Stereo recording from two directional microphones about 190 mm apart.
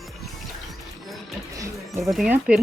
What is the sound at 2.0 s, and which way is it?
Speech, centre (ahead or behind).